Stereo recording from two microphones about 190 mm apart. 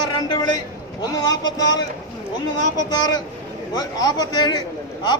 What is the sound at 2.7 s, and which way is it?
A man's voice, 20° left (ahead or behind).